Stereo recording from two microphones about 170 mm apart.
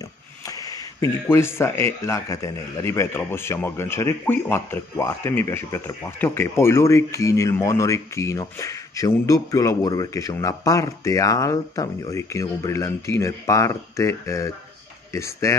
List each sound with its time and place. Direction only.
1.3 s a man's voice: 15° left (ahead or behind)